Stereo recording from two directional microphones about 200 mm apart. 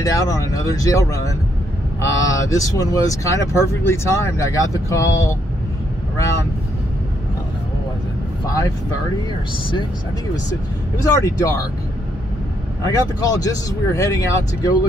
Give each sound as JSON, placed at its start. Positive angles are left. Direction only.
{"t": 0.0, "sound": "speech", "side_deg": 15}
{"t": 11.1, "sound": "speech", "side_deg": 15}
{"t": 12.8, "sound": "speech", "side_deg": 15}